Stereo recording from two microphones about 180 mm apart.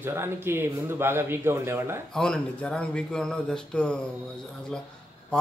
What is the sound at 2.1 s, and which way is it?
Speech, 5° left (ahead or behind).